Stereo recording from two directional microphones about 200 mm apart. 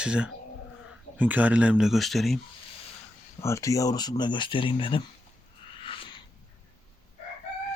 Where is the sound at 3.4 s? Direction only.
15° left (ahead or behind).